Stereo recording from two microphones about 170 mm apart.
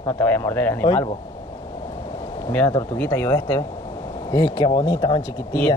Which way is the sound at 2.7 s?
15° left (ahead or behind).